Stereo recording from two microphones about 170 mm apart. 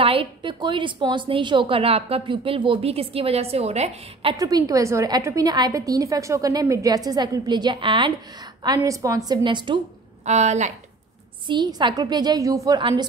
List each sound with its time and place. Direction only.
0.0 s a woman's voice: 30° right (ahead or behind)
10.2 s a woman's voice: 40° right (ahead or behind)
11.4 s a woman's voice: 25° right (ahead or behind)